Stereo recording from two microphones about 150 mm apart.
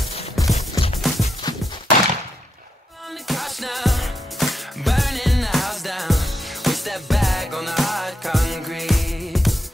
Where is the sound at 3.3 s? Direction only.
Centre (ahead or behind).